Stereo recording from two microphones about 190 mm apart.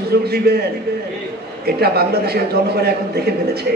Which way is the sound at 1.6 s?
55° right (ahead or behind).